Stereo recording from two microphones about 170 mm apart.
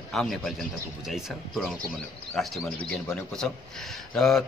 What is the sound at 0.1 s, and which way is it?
A man's voice, centre (ahead or behind).